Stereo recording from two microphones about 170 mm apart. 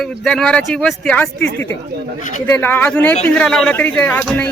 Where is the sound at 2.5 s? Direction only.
10° left (ahead or behind).